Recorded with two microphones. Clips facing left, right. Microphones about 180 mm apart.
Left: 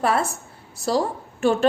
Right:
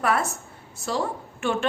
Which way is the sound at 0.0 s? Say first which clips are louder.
Left 2 dB; 30° left (ahead or behind).